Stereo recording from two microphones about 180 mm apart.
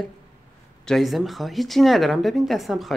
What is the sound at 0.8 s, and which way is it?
Speech, centre (ahead or behind).